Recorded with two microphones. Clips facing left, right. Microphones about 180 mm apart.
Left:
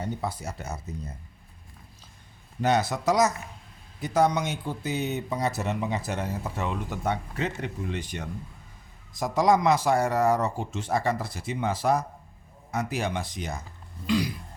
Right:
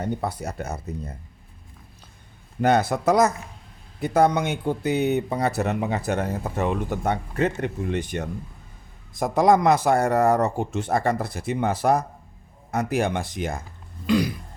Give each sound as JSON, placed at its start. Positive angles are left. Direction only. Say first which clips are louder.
{"t": 0.0, "sound": "speech", "louder": "right 4 dB", "side_deg": -55}
{"t": 2.6, "sound": "speech", "louder": "right 4 dB", "side_deg": -55}
{"t": 14.1, "sound": "throat clearing", "louder": "right 4 dB", "side_deg": -55}